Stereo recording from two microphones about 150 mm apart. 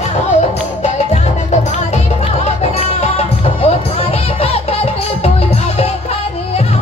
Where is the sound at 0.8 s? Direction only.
50° left (ahead or behind).